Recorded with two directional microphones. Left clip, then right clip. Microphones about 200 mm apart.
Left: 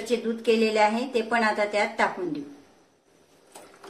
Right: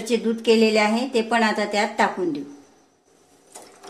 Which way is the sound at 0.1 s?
40° right (ahead or behind).